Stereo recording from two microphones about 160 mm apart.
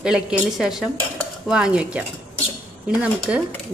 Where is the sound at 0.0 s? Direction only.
5° right (ahead or behind).